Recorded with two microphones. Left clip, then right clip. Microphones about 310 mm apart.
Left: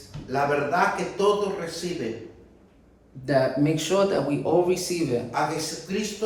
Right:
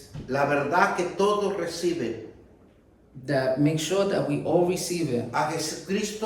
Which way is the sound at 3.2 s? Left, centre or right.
Centre.